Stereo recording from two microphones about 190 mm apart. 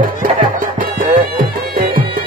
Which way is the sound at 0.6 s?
45° right (ahead or behind).